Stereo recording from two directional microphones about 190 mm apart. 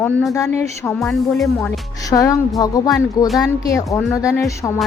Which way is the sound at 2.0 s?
20° left (ahead or behind).